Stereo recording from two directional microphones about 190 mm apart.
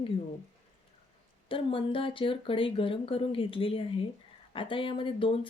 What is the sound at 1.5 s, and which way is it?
A woman's voice, 25° left (ahead or behind).